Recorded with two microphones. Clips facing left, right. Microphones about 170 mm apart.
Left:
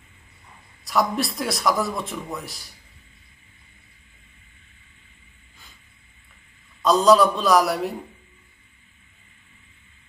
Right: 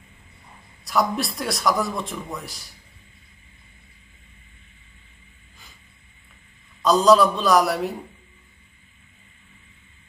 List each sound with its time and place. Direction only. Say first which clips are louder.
0.8 s speech: even; centre (ahead or behind)
6.8 s speech: even; centre (ahead or behind)